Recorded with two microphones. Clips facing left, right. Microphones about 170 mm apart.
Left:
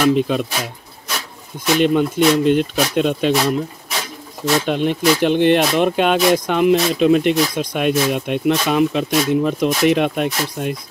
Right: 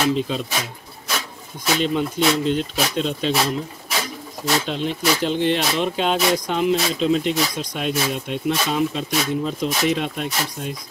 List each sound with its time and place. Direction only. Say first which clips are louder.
0.0 s speech: left 6 dB; 60° left (ahead or behind)
1.8 s speech: left 7 dB; 60° left (ahead or behind)
4.6 s speech: left 6 dB; 60° left (ahead or behind)